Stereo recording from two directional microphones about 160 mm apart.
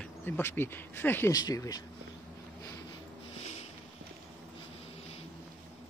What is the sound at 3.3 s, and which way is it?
Sniff, 40° left (ahead or behind).